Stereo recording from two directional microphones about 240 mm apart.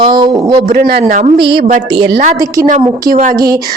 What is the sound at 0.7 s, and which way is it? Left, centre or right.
Speech, right.